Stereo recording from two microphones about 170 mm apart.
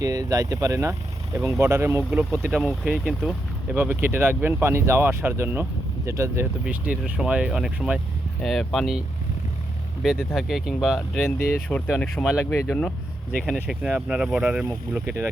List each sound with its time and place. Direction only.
0.0 s speech: 20° right (ahead or behind); by 11.3 s centre (ahead or behind)
11.3 s speech: 10° left (ahead or behind)
12.1 s speech: centre (ahead or behind)
12.5 s speech: 10° left (ahead or behind)
13.4 s speech: centre (ahead or behind)